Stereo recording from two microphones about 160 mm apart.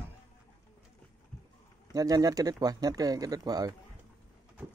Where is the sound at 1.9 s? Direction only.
20° right (ahead or behind).